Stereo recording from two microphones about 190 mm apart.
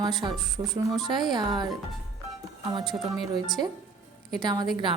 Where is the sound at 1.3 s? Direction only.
20° right (ahead or behind).